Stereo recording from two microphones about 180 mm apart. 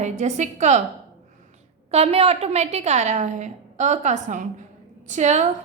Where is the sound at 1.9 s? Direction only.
35° right (ahead or behind).